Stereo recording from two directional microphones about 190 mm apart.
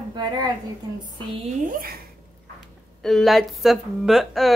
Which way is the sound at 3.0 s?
Centre (ahead or behind).